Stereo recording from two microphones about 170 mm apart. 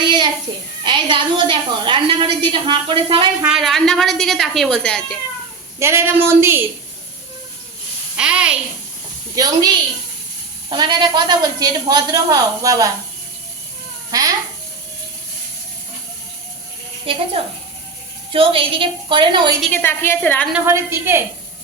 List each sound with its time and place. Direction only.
0.0 s a sound: 25° right (ahead or behind)
0.9 s a woman's voice: 30° right (ahead or behind)
3.4 s a woman's voice: centre (ahead or behind)
5.8 s speech: 15° right (ahead or behind)
8.1 s a woman's voice: 5° right (ahead or behind)
9.3 s a woman's voice: 25° right (ahead or behind)
14.1 s sizzle: 20° right (ahead or behind)
17.4 s a woman's voice: 35° right (ahead or behind)
19.7 s a woman's voice: 15° left (ahead or behind)
20.5 s speech: 15° right (ahead or behind)